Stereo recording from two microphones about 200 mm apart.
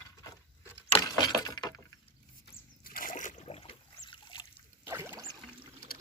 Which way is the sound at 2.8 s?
45° left (ahead or behind).